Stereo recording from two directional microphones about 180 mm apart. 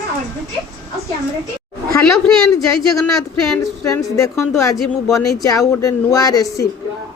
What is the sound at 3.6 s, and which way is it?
A woman's voice, 20° left (ahead or behind).